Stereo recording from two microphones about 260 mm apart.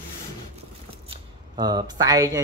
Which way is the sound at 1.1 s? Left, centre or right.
Centre.